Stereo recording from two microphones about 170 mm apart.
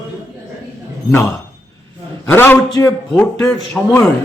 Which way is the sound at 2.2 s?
15° left (ahead or behind).